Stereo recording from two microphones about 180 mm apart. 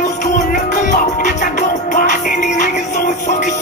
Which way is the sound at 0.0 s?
40° left (ahead or behind).